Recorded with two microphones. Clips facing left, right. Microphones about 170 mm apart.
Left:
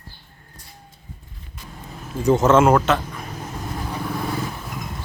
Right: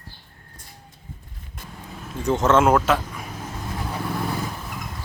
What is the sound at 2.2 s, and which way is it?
Speech, 10° left (ahead or behind).